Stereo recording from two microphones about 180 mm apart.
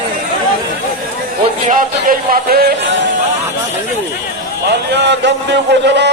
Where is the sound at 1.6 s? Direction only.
50° right (ahead or behind).